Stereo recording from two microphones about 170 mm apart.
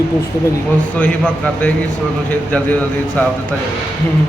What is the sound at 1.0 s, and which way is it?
A man's voice, 5° left (ahead or behind).